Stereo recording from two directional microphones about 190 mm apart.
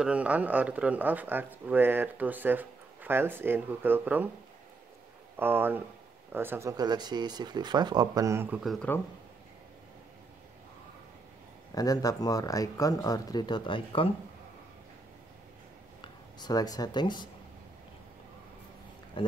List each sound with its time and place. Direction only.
0.0 s speech: 5° right (ahead or behind)
5.4 s speech: 10° right (ahead or behind)
11.7 s speech: 20° left (ahead or behind)
16.0 s speech: 20° left (ahead or behind)